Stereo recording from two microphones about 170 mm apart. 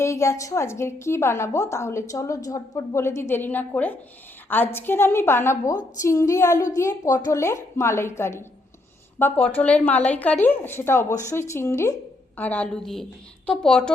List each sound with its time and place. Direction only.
0.0 s a woman's voice: 15° left (ahead or behind)